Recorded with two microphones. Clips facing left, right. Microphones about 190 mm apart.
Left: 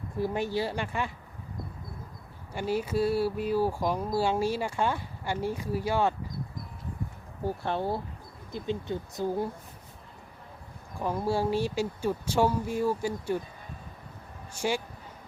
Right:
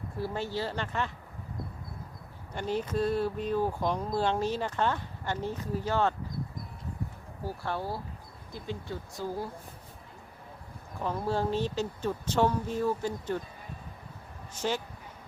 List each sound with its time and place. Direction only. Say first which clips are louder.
0.2 s speech: left 4 dB; 15° left (ahead or behind)
2.6 s speech: left 2 dB; 10° left (ahead or behind)
7.4 s speech: left 4 dB; 25° left (ahead or behind)
11.0 s speech: left 2 dB; 10° left (ahead or behind)
14.5 s speech: left 2 dB; 10° left (ahead or behind)